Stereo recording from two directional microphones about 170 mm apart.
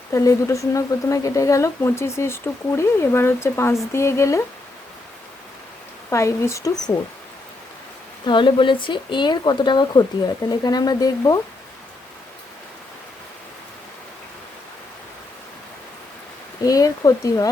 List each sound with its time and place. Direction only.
0.1 s speech: 20° left (ahead or behind)
6.1 s speech: 15° left (ahead or behind)
8.3 s speech: 30° left (ahead or behind)
16.6 s speech: 20° left (ahead or behind)